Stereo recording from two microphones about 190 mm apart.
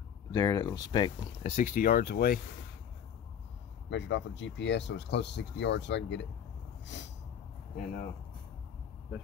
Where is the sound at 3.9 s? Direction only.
70° left (ahead or behind).